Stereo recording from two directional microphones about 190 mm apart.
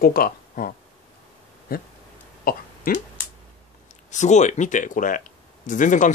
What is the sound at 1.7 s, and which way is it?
Speech, 50° left (ahead or behind).